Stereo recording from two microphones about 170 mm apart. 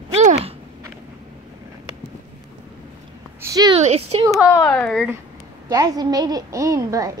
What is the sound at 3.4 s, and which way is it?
Speech, 20° right (ahead or behind).